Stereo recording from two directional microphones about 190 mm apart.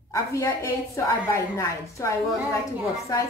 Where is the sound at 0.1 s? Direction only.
15° left (ahead or behind).